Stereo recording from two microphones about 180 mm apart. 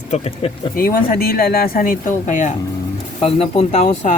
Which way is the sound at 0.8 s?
55° left (ahead or behind).